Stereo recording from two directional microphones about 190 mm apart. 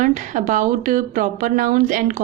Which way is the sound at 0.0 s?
40° right (ahead or behind).